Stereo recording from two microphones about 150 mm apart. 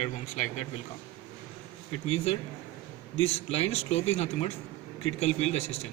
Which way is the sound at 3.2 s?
40° left (ahead or behind).